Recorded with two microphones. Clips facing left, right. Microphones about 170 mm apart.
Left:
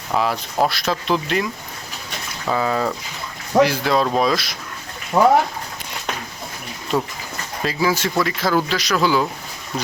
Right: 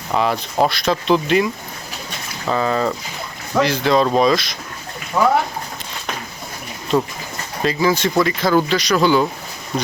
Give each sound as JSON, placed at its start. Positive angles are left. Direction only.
{"t": 0.1, "sound": "speech", "side_deg": 0}
{"t": 2.5, "sound": "speech", "side_deg": 5}
{"t": 5.1, "sound": "speech", "side_deg": 30}
{"t": 6.9, "sound": "speech", "side_deg": 5}